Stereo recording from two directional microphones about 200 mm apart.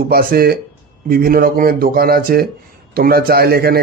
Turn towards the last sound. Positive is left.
turn(degrees=-50)  # may be behind; listen again after turning